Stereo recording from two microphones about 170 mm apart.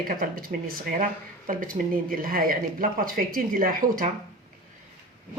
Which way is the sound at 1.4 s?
55° right (ahead or behind).